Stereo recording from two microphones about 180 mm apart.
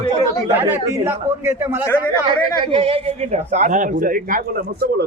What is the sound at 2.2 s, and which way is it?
A man's voice, 30° right (ahead or behind).